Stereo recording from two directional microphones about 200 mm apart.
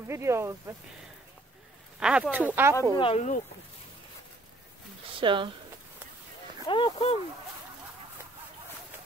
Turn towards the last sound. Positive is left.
turn(degrees=25)  # may be behind; listen again after turning